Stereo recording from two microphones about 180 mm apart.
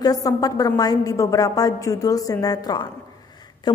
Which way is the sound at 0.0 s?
20° left (ahead or behind).